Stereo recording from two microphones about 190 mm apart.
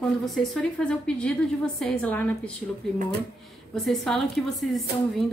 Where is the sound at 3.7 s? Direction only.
Centre (ahead or behind).